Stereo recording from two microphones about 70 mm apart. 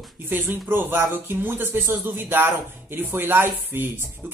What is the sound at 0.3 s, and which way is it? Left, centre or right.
Speech, right.